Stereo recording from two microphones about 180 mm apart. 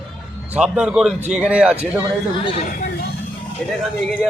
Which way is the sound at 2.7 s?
55° left (ahead or behind).